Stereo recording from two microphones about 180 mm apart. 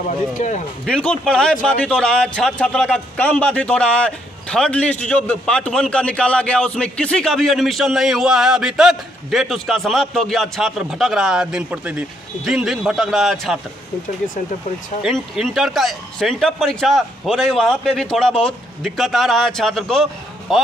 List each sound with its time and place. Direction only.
0.4 s speech: 40° left (ahead or behind)
0.8 s a man's voice: 5° left (ahead or behind)
15.0 s a man's voice: centre (ahead or behind)